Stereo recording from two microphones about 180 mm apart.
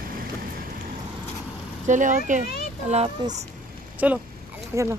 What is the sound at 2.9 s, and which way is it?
Speech, 35° right (ahead or behind).